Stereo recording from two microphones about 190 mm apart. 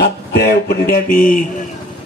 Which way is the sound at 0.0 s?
55° left (ahead or behind).